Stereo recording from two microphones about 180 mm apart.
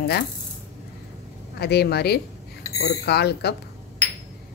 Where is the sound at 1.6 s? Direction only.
65° left (ahead or behind).